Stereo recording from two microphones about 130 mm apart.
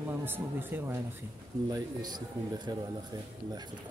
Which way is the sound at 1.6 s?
30° right (ahead or behind).